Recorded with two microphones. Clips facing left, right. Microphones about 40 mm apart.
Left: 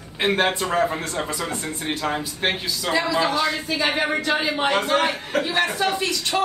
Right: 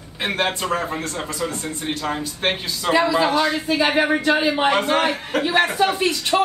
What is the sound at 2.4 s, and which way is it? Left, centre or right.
A man's voice, centre.